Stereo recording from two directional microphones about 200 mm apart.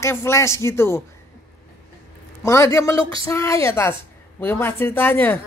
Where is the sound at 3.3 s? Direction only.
15° left (ahead or behind).